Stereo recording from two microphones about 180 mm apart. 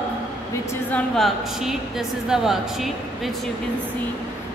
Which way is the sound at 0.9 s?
Centre (ahead or behind).